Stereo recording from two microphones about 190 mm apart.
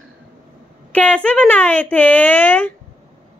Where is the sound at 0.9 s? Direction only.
10° left (ahead or behind).